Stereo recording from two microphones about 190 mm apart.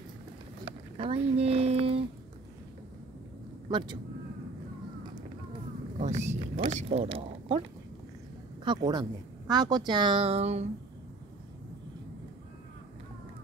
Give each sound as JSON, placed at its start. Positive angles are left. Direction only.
{"t": 0.9, "sound": "speech", "side_deg": -30}
{"t": 3.7, "sound": "speech", "side_deg": -25}
{"t": 5.9, "sound": "speech", "side_deg": -35}
{"t": 8.6, "sound": "speech", "side_deg": -20}